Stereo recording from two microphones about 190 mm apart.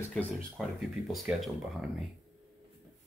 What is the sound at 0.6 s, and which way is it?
Speech, centre (ahead or behind).